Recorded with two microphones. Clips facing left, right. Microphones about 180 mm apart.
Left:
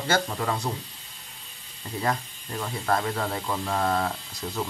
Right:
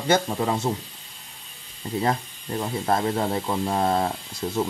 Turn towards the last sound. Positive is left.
turn(degrees=-25)  # may be behind; listen again after turning